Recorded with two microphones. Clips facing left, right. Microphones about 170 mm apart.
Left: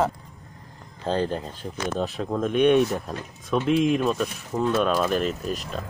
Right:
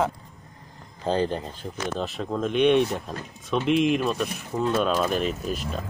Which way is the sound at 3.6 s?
40° left (ahead or behind).